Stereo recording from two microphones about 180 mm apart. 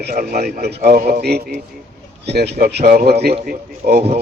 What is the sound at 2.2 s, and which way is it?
Speech, 65° right (ahead or behind).